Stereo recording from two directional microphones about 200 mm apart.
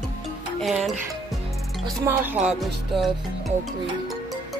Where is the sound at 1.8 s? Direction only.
10° right (ahead or behind).